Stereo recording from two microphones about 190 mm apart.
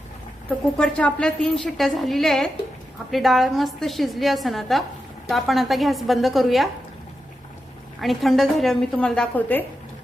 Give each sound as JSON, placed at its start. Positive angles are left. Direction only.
{"t": 0.8, "sound": "a woman's voice", "side_deg": 5}
{"t": 8.0, "sound": "a woman's voice", "side_deg": 0}